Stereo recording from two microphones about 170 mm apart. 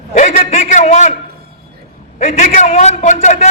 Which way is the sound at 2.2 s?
45° left (ahead or behind).